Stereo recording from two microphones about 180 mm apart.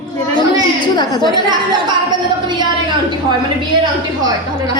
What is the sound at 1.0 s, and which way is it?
Speech, 25° left (ahead or behind).